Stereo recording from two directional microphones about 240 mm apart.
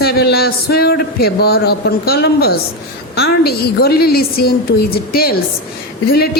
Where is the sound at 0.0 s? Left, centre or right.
Left.